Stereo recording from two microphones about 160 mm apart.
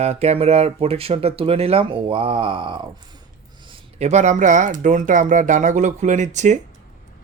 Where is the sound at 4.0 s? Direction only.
45° right (ahead or behind).